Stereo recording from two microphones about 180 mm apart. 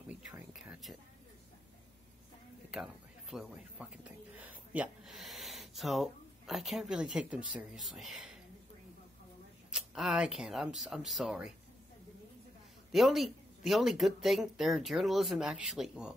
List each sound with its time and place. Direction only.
0.1 s a sound: 5° right (ahead or behind)
2.7 s speech: 5° right (ahead or behind)
9.7 s speech: 5° right (ahead or behind)
12.9 s speech: centre (ahead or behind)